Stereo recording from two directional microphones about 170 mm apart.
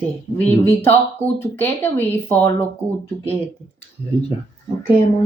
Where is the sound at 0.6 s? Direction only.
15° left (ahead or behind).